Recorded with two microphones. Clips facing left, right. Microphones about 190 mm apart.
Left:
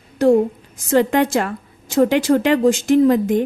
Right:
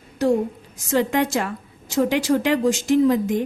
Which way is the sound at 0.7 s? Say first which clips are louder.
Left 5 dB; 55° left (ahead or behind).